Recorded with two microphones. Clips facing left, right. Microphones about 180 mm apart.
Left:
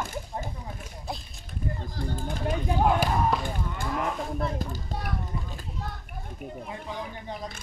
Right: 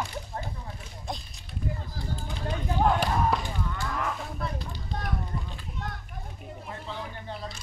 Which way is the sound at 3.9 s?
25° left (ahead or behind).